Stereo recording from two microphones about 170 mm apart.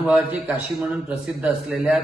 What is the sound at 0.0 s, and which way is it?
A man's voice, 10° right (ahead or behind).